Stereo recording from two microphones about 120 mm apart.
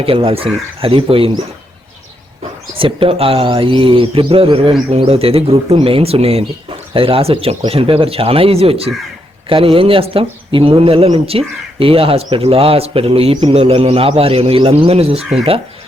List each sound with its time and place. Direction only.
0.0 s speech: 50° right (ahead or behind)
2.7 s speech: 45° right (ahead or behind)
15.2 s speech: centre (ahead or behind)